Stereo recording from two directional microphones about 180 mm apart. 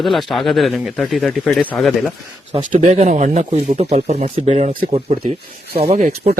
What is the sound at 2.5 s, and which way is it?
Speech, 35° right (ahead or behind).